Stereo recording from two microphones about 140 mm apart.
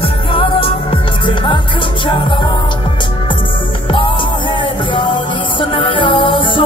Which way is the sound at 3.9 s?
35° left (ahead or behind).